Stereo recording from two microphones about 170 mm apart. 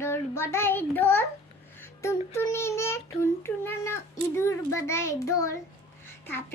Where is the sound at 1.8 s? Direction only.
15° left (ahead or behind).